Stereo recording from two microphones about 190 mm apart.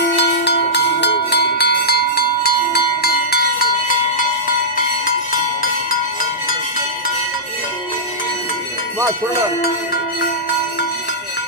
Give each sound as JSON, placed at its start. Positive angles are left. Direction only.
{"t": 0.0, "sound": "cowbell", "side_deg": 60}
{"t": 5.0, "sound": "music", "side_deg": 50}